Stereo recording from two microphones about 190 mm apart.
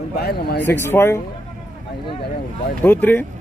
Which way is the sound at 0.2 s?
55° left (ahead or behind).